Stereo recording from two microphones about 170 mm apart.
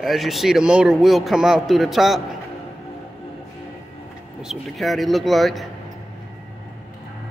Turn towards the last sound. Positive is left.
turn(degrees=0)  # may be behind; listen again after turning